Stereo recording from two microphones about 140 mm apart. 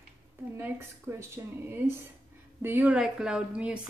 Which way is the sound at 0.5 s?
15° right (ahead or behind).